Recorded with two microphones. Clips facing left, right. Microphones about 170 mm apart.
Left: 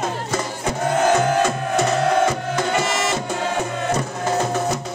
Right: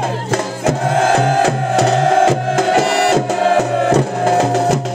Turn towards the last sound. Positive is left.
turn(degrees=-90)